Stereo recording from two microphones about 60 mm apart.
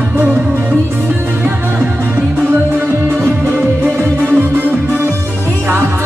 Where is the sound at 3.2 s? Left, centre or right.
Right.